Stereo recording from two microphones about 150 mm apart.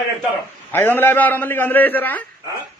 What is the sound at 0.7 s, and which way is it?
A man's voice, 15° left (ahead or behind).